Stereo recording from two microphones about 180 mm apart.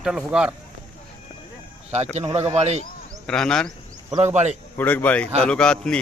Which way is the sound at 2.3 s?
35° right (ahead or behind).